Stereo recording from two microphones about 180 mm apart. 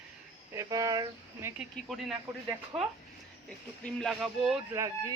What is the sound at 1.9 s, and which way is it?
Speech, centre (ahead or behind).